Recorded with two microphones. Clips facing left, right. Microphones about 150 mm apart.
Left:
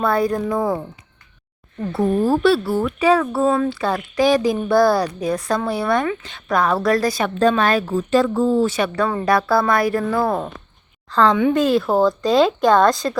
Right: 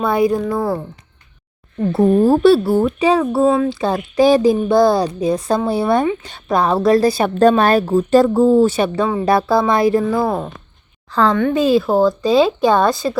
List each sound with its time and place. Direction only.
0.0 s speech: 10° right (ahead or behind)
1.9 s a woman's voice: 20° right (ahead or behind)
10.0 s speech: 10° right (ahead or behind)